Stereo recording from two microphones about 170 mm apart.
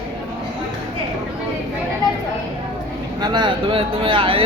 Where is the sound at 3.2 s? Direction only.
25° right (ahead or behind).